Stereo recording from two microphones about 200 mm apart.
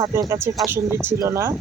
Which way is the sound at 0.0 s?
15° right (ahead or behind).